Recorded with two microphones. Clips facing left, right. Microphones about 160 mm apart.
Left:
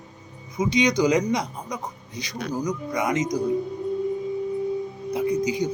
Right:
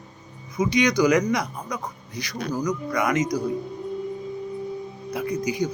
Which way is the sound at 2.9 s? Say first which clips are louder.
Right 1 dB; 25° left (ahead or behind).